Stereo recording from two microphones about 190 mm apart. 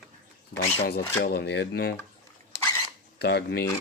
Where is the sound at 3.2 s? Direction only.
60° left (ahead or behind).